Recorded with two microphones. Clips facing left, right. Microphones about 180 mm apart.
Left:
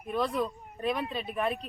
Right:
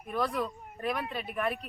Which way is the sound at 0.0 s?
25° left (ahead or behind).